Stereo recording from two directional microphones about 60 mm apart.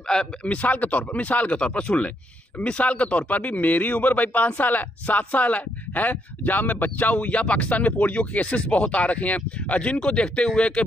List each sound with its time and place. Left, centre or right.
0.1 s speech: centre